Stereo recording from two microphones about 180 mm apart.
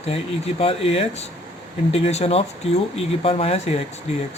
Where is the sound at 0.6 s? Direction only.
35° left (ahead or behind).